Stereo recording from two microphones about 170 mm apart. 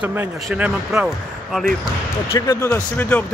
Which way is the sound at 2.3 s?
15° left (ahead or behind).